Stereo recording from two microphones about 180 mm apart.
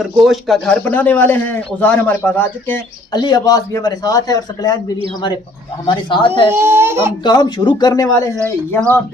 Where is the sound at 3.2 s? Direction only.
20° left (ahead or behind).